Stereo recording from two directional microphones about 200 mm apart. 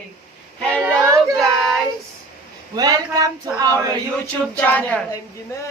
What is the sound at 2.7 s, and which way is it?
Speech, 20° right (ahead or behind).